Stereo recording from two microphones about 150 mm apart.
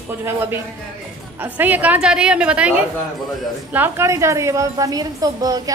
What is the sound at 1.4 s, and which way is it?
A woman's voice, 10° right (ahead or behind).